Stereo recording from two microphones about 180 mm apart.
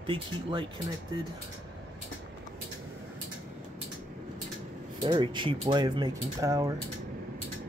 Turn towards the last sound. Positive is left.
turn(degrees=-20)  # may be behind; listen again after turning